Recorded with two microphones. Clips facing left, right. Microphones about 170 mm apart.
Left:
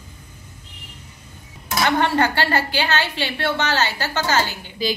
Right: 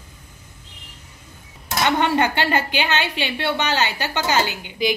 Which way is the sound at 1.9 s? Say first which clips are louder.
Even; 20° right (ahead or behind).